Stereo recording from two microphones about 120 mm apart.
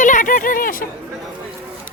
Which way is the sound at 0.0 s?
90° left.